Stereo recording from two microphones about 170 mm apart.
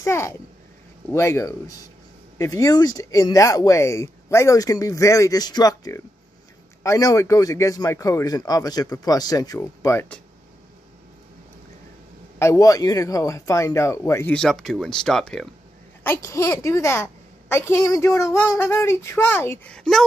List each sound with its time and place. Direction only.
0.0 s a woman's voice: 15° left (ahead or behind)
12.4 s speech: 20° left (ahead or behind)
14.3 s speech: centre (ahead or behind)
16.0 s a woman's voice: 15° left (ahead or behind)